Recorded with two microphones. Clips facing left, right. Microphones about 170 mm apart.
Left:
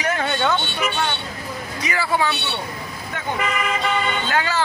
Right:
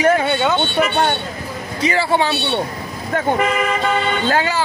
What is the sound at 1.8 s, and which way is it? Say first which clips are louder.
Speech: right 5 dB; 30° right (ahead or behind).